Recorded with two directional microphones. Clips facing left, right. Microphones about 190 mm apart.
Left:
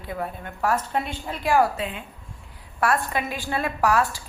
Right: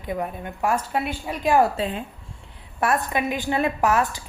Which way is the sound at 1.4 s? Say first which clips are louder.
Right 2 dB; 25° right (ahead or behind).